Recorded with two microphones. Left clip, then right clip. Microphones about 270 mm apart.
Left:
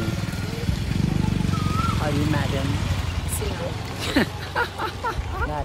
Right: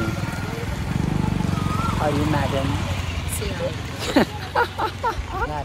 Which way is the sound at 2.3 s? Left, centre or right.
Centre.